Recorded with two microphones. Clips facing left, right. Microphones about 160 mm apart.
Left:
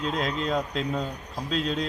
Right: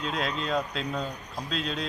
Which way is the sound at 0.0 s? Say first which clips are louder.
Left 3 dB; 40° left (ahead or behind).